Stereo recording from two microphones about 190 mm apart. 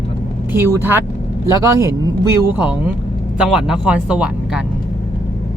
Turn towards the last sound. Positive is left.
turn(degrees=-5)  # may be behind; listen again after turning